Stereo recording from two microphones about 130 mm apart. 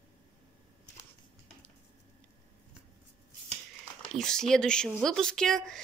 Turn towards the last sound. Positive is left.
turn(degrees=5)  # may be behind; listen again after turning